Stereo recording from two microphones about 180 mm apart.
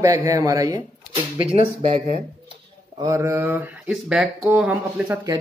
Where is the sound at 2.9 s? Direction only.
20° right (ahead or behind).